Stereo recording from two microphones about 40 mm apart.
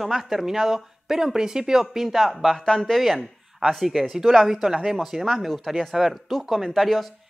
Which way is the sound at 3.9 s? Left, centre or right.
Centre.